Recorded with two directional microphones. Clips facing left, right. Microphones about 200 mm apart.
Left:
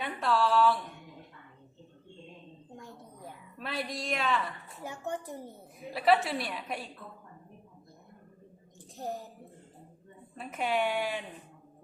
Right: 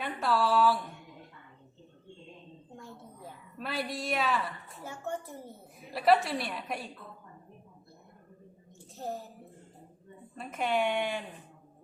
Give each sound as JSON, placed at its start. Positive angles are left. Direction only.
{"t": 0.0, "sound": "a woman's voice", "side_deg": 0}
{"t": 2.7, "sound": "a sound", "side_deg": 15}
{"t": 3.6, "sound": "a woman's voice", "side_deg": -5}
{"t": 4.8, "sound": "a child's voice", "side_deg": 15}
{"t": 5.9, "sound": "a woman's voice", "side_deg": 0}
{"t": 9.0, "sound": "speech", "side_deg": 15}
{"t": 10.3, "sound": "a woman's voice", "side_deg": 0}